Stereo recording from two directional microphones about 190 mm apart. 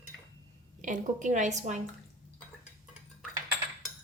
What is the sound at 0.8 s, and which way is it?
A woman's voice, 40° right (ahead or behind).